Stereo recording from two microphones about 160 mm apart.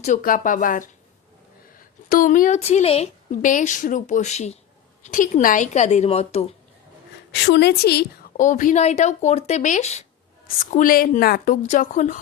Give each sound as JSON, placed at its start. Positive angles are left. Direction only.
{"t": 0.0, "sound": "a woman's voice", "side_deg": 55}
{"t": 2.0, "sound": "a woman's voice", "side_deg": 55}
{"t": 2.6, "sound": "a woman's voice", "side_deg": 40}
{"t": 3.4, "sound": "speech", "side_deg": 50}
{"t": 5.0, "sound": "speech", "side_deg": 55}
{"t": 7.4, "sound": "a woman's voice", "side_deg": 90}
{"t": 8.4, "sound": "speech", "side_deg": 55}
{"t": 10.4, "sound": "a woman's voice", "side_deg": 55}
{"t": 11.6, "sound": "speech", "side_deg": 50}